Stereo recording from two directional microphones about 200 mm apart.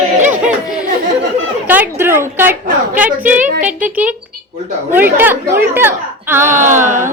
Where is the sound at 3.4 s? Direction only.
40° right (ahead or behind).